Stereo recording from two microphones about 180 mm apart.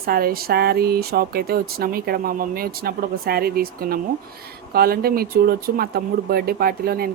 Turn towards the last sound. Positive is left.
turn(degrees=-55)  # may be behind; listen again after turning